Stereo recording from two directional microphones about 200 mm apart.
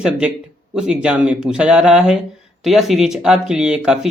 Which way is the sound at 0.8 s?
5° right (ahead or behind).